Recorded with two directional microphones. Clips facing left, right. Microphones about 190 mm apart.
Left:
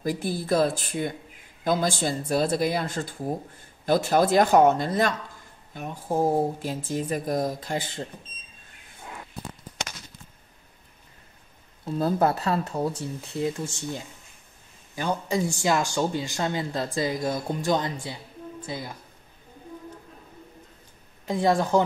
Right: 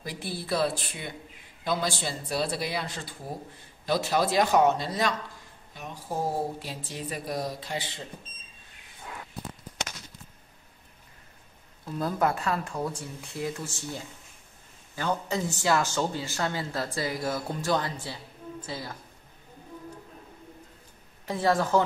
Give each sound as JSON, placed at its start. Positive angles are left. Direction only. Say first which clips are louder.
{"t": 0.0, "sound": "speech", "louder": "left 8 dB", "side_deg": 45}
{"t": 11.8, "sound": "speech", "louder": "left 4 dB", "side_deg": 30}
{"t": 21.3, "sound": "speech", "louder": "left 2 dB", "side_deg": 20}